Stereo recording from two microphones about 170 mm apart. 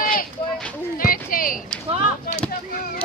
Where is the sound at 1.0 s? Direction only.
55° left (ahead or behind).